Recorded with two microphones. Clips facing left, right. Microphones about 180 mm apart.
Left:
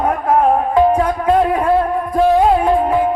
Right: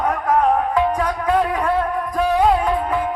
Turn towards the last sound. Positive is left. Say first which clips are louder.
# left 6 dB
turn(degrees=30)  # may be behind; listen again after turning